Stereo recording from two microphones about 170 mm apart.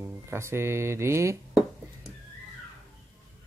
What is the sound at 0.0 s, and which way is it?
Speech, 15° right (ahead or behind).